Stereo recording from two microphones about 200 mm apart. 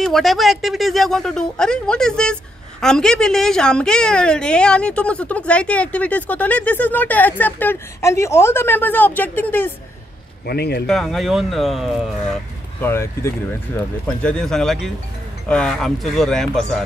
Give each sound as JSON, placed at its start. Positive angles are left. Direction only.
{"t": 0.0, "sound": "a woman's voice", "side_deg": 0}
{"t": 10.4, "sound": "a man's voice", "side_deg": 55}
{"t": 10.9, "sound": "speech", "side_deg": 0}
{"t": 12.8, "sound": "speech", "side_deg": 15}